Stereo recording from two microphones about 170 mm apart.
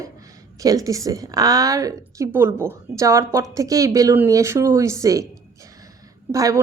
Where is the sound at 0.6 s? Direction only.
20° right (ahead or behind).